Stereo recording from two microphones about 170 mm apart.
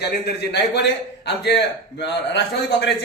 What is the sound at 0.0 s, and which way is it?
Speech, 75° left (ahead or behind).